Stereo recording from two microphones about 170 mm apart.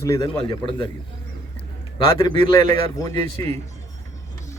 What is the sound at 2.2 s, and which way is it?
Speech, 30° left (ahead or behind).